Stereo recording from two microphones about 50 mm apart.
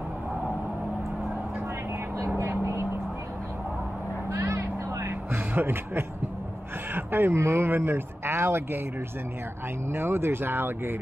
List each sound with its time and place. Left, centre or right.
2.1 s vehicle: right
2.6 s vehicle: right
4.3 s vehicle: right
5.3 s speech: right
7.3 s speech: right
9.8 s speech: right